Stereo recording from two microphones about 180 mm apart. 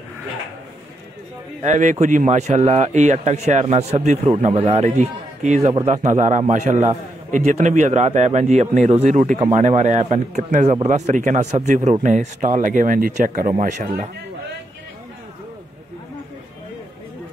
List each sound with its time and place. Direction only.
1.6 s a man's voice: 45° right (ahead or behind)